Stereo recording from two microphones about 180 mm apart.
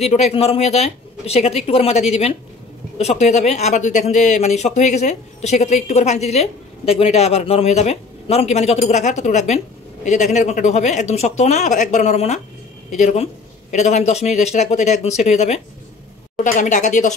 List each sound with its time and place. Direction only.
0.0 s speech: 35° left (ahead or behind)